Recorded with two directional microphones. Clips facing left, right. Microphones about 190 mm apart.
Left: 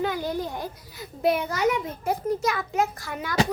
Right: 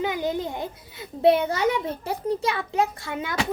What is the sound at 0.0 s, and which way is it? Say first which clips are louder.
A child's voice: right 1 dB; 20° right (ahead or behind).